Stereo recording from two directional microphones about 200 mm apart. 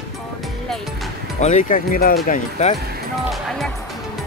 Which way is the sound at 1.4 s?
35° left (ahead or behind).